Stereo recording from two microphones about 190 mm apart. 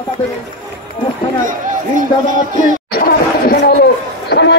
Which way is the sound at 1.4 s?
45° right (ahead or behind).